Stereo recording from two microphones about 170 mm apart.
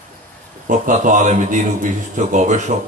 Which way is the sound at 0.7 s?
50° right (ahead or behind).